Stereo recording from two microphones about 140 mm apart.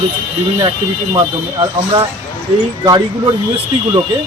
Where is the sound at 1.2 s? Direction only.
30° right (ahead or behind).